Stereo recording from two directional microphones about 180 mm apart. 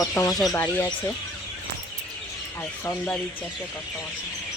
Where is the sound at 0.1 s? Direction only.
15° left (ahead or behind).